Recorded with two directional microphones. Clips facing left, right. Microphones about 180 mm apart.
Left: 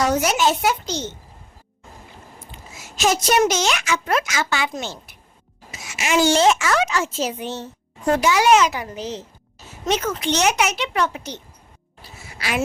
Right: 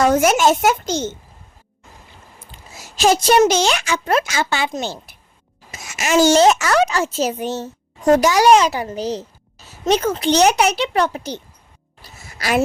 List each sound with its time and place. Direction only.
0.0 s a child's voice: 50° right (ahead or behind)
2.7 s a woman's voice: 35° right (ahead or behind)
5.7 s a woman's voice: 45° right (ahead or behind)
12.4 s speech: 40° right (ahead or behind)